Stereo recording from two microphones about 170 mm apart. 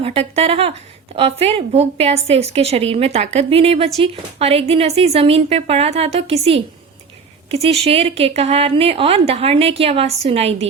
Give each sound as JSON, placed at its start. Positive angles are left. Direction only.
{"t": 0.0, "sound": "a woman's voice", "side_deg": -35}